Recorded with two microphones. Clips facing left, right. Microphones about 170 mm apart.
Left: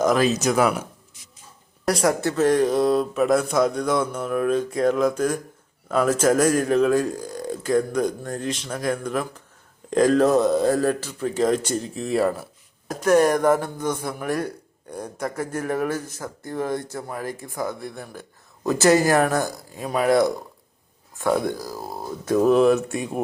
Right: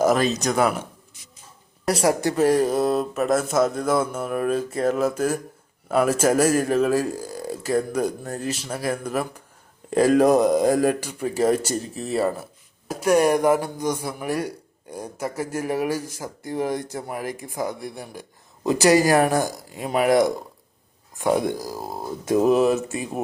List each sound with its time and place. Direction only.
0.0 s speech: centre (ahead or behind)
1.9 s speech: 30° right (ahead or behind)
2.2 s speech: 10° right (ahead or behind)